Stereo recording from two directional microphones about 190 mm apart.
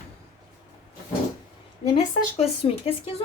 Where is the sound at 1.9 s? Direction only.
35° left (ahead or behind).